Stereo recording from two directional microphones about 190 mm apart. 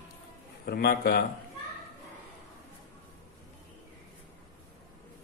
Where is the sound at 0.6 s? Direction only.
55° left (ahead or behind).